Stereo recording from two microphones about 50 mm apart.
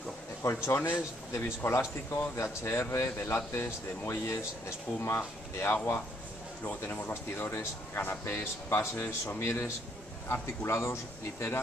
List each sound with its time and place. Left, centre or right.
0.4 s speech: left
6.8 s speech: left